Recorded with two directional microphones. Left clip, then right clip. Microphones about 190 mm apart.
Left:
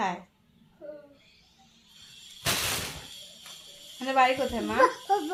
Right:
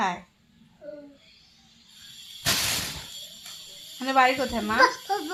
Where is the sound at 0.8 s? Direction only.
50° left (ahead or behind).